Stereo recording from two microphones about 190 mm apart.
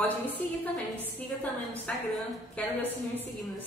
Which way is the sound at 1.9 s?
5° left (ahead or behind).